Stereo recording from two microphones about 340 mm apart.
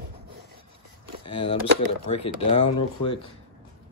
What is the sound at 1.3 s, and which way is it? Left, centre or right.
Speech, centre.